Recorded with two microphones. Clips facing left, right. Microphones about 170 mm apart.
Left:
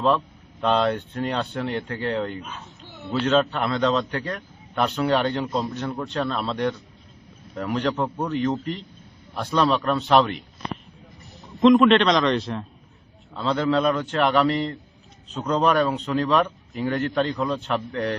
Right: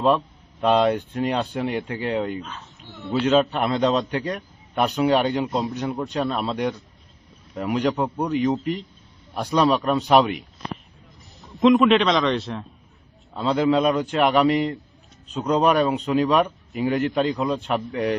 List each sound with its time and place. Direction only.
0.6 s a man's voice: 10° right (ahead or behind)
7.9 s speech: 15° right (ahead or behind)
8.5 s a man's voice: centre (ahead or behind)
11.6 s a man's voice: centre (ahead or behind)
13.3 s speech: 10° right (ahead or behind)